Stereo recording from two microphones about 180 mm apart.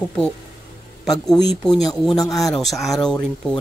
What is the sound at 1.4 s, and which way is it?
Speech, centre (ahead or behind).